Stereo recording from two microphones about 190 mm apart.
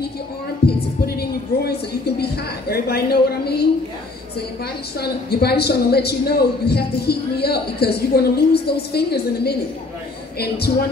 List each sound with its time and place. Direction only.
0.6 s a sound: 55° left (ahead or behind)
2.7 s a man's voice: 55° left (ahead or behind)
5.0 s a man's voice: 55° left (ahead or behind)